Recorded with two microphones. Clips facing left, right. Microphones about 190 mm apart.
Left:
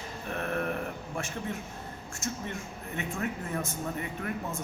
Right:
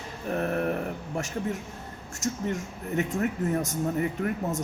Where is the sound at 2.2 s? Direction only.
40° right (ahead or behind).